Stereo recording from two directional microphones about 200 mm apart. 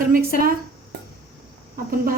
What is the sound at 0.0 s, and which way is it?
Speech, 45° right (ahead or behind).